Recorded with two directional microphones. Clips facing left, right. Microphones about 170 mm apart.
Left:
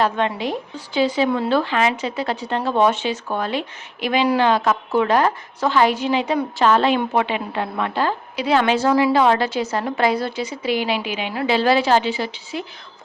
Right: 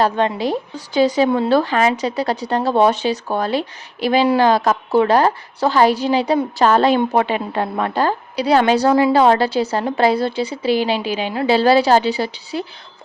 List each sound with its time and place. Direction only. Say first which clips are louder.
0.0 s speech: right 3 dB; 35° right (ahead or behind)